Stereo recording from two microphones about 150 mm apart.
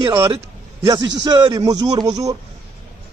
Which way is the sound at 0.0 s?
25° right (ahead or behind).